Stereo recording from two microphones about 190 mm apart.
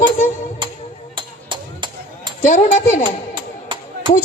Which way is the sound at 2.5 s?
40° left (ahead or behind).